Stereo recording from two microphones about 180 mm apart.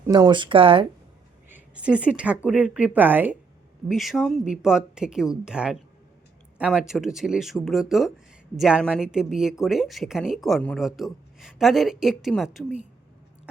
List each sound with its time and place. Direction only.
0.1 s speech: 25° right (ahead or behind)
1.5 s a woman's voice: 10° right (ahead or behind)